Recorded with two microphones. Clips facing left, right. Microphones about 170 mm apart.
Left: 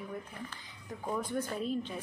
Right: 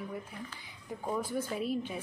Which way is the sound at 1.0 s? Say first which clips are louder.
Right 1 dB; 5° right (ahead or behind).